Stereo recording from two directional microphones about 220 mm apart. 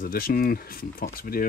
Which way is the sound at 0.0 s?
40° left (ahead or behind).